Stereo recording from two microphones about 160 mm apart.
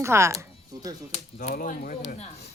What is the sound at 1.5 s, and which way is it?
Speech, 60° left (ahead or behind).